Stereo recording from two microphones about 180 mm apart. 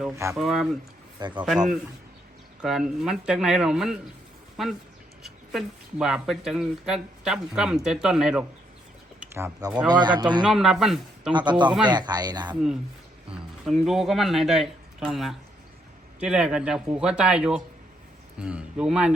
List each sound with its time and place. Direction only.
0.3 s speech: centre (ahead or behind)
1.2 s speech: 25° right (ahead or behind)
1.5 s speech: centre (ahead or behind); by 10.4 s 25° right (ahead or behind)
10.4 s speech: centre (ahead or behind)
11.3 s speech: 25° right (ahead or behind)
13.3 s speech: centre (ahead or behind)